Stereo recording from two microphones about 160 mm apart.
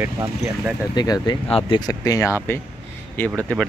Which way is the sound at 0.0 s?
15° right (ahead or behind).